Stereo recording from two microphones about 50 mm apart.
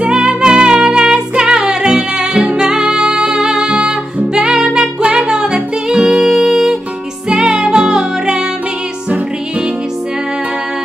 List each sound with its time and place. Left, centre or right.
0.0 s music: centre
3.6 s music: right